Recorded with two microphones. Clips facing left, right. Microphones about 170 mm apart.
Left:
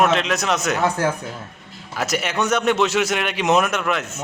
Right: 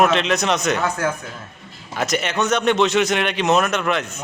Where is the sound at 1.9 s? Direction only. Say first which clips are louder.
Right 1 dB; 5° left (ahead or behind).